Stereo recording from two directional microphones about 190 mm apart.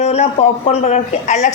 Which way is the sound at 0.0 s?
35° left (ahead or behind).